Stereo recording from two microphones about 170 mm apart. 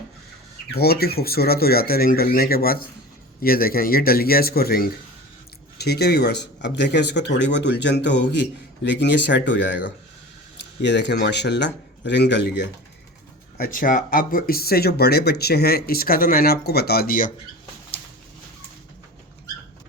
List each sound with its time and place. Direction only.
0.7 s speech: 65° left (ahead or behind); by 12.6 s 90° left
13.6 s speech: 55° left (ahead or behind)